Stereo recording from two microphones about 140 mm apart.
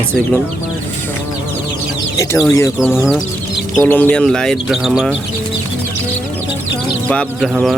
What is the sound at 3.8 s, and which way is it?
Speech, 15° left (ahead or behind).